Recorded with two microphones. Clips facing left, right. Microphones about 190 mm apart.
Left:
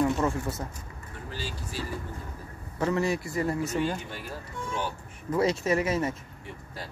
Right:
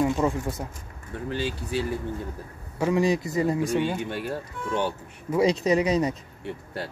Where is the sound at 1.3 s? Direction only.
60° right (ahead or behind).